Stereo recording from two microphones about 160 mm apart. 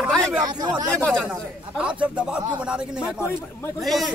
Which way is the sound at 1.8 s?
10° right (ahead or behind).